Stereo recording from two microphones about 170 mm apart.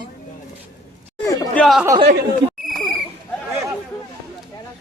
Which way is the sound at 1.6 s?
Centre (ahead or behind).